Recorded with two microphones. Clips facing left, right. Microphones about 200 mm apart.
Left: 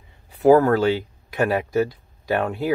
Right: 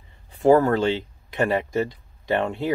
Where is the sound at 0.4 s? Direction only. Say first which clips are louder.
Left 2 dB; 5° left (ahead or behind).